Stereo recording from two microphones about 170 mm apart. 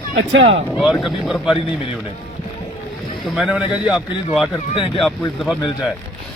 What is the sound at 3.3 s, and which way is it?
Speech, 5° right (ahead or behind).